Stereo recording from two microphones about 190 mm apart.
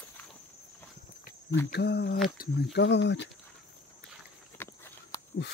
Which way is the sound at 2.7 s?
65° left (ahead or behind).